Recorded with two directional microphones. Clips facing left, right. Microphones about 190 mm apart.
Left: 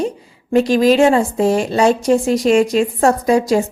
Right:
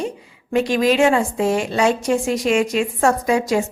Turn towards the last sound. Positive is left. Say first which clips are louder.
# left 4 dB
turn(degrees=35)  # may be behind; listen again after turning